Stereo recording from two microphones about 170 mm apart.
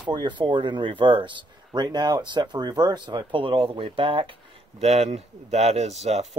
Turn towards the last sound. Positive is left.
turn(degrees=-40)  # may be behind; listen again after turning